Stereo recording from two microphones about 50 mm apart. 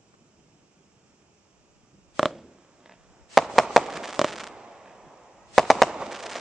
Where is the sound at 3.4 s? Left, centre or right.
Centre.